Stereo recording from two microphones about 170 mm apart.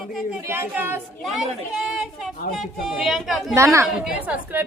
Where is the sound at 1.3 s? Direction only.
Centre (ahead or behind).